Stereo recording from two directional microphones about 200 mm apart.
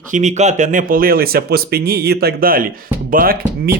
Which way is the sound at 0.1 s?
35° right (ahead or behind).